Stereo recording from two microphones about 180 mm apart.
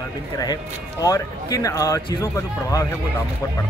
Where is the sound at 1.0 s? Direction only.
20° left (ahead or behind).